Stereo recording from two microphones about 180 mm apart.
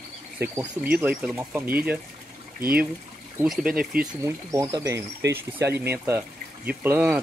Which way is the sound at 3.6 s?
55° right (ahead or behind).